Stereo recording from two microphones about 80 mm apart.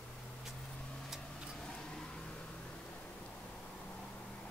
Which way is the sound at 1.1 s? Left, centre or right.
Centre.